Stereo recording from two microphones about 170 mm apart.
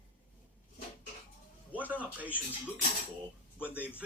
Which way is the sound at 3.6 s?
10° right (ahead or behind).